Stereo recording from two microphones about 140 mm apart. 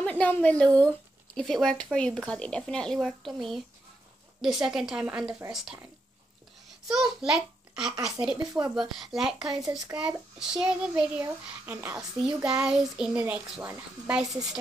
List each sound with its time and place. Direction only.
0.0 s a woman's voice: 10° left (ahead or behind)
4.6 s speech: 5° right (ahead or behind)
6.9 s a child's voice: 5° right (ahead or behind)